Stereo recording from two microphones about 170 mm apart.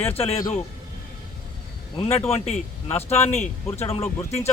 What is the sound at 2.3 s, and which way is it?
Speech, 40° left (ahead or behind).